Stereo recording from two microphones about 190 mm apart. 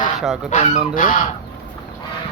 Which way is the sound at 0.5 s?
40° left (ahead or behind).